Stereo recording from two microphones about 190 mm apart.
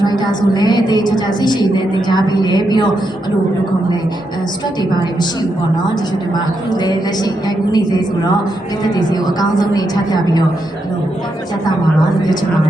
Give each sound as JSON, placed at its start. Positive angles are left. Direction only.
{"t": 0.0, "sound": "a woman's voice", "side_deg": 20}
{"t": 6.7, "sound": "a woman's voice", "side_deg": 20}